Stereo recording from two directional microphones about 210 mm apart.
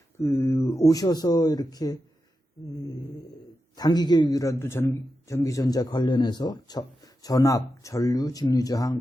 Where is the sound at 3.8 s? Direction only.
20° left (ahead or behind).